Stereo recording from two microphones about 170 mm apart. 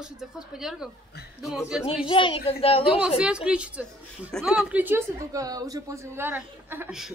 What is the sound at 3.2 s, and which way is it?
A woman's voice, 5° right (ahead or behind).